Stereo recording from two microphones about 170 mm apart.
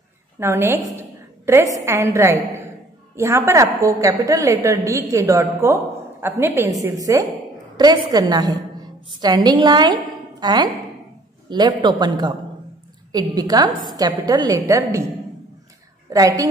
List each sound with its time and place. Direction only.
0.4 s a woman's voice: 15° right (ahead or behind)
16.1 s a woman's voice: 20° right (ahead or behind)